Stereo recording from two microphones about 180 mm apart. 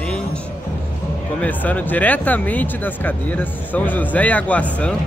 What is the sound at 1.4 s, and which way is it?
Speech, 10° left (ahead or behind).